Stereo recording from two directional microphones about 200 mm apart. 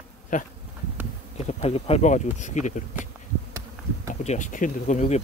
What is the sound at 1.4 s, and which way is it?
Speech, 30° left (ahead or behind).